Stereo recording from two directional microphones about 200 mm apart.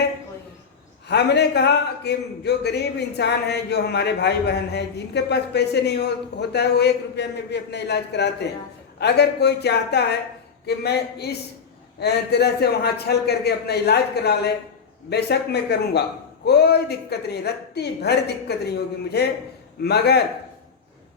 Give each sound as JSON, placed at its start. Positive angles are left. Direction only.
{"t": 1.0, "sound": "a man's voice", "side_deg": 55}